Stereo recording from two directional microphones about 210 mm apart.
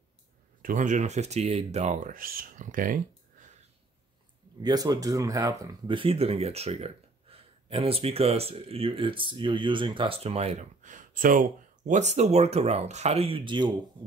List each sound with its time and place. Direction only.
0.6 s speech: 40° right (ahead or behind)
4.6 s speech: 20° right (ahead or behind)